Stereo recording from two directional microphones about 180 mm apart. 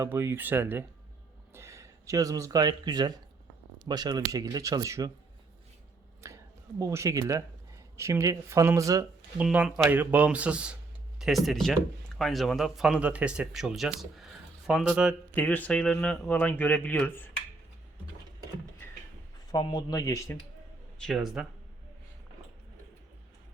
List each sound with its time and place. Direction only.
0.0 s speech: 15° right (ahead or behind)
6.2 s speech: 20° right (ahead or behind)
9.4 s speech: 5° right (ahead or behind)
15.4 s speech: 10° left (ahead or behind)
19.5 s speech: 25° left (ahead or behind)
21.0 s speech: centre (ahead or behind)